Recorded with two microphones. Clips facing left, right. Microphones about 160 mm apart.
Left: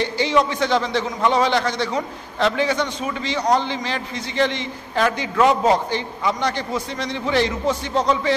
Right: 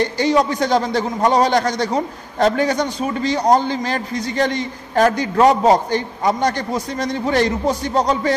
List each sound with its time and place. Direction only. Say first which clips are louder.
0.0 s a man's voice: right 3 dB; 40° right (ahead or behind)